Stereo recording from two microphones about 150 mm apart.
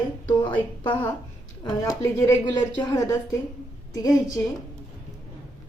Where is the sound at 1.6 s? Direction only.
25° left (ahead or behind).